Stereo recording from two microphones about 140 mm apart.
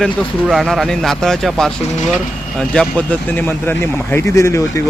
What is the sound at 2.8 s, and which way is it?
Speech, 10° left (ahead or behind).